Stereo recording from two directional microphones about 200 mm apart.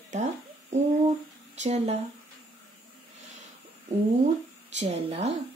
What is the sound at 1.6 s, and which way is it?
Speech, 35° right (ahead or behind).